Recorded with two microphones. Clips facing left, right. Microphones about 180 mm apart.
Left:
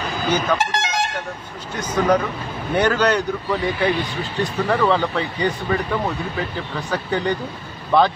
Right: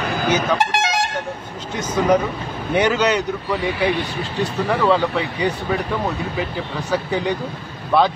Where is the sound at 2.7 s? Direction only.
10° right (ahead or behind).